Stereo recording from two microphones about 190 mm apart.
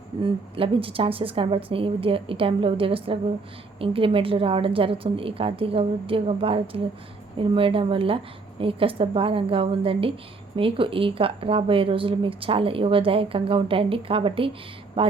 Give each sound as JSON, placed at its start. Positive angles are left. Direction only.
{"t": 0.2, "sound": "a woman's voice", "side_deg": -30}